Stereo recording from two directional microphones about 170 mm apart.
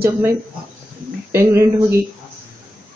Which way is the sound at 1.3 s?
15° right (ahead or behind).